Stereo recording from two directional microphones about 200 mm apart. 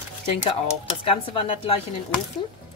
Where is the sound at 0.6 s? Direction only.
25° left (ahead or behind).